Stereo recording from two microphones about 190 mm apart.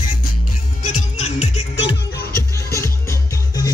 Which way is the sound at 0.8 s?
35° left (ahead or behind).